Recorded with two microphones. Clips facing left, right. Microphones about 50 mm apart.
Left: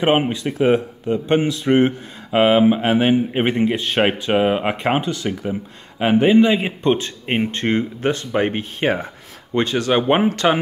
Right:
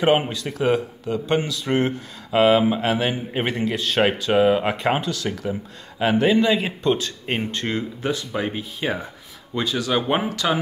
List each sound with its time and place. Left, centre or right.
0.0 s a man's voice: left